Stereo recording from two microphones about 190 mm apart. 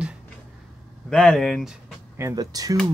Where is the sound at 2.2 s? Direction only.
15° right (ahead or behind).